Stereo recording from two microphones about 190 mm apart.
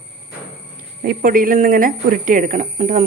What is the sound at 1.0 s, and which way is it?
Speech, 50° right (ahead or behind).